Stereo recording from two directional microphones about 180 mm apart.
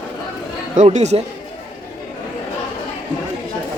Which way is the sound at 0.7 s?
40° right (ahead or behind).